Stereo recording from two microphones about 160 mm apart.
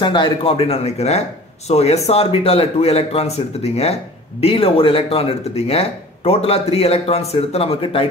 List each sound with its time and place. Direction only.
0.0 s speech: 30° left (ahead or behind)